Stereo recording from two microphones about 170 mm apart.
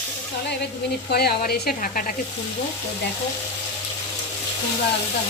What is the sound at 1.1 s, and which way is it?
Speech, 65° left (ahead or behind).